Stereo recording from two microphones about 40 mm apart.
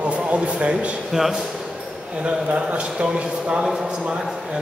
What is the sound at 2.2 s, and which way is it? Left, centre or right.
A man's voice, right.